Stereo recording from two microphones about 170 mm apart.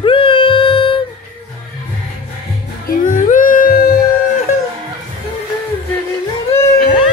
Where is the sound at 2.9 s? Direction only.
50° left (ahead or behind).